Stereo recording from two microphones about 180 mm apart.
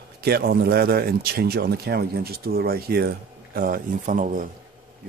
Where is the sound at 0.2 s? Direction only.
60° right (ahead or behind).